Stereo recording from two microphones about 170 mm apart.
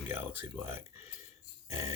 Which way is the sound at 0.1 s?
15° right (ahead or behind).